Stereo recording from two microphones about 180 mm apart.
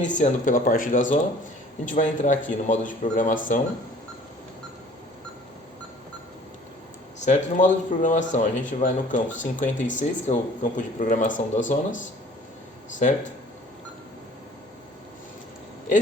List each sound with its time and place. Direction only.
0.0 s speech: 45° left (ahead or behind)
7.3 s speech: 45° left (ahead or behind)
13.0 s speech: 45° left (ahead or behind)